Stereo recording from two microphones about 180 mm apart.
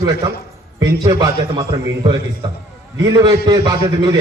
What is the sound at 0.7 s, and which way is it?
Speech, 20° right (ahead or behind).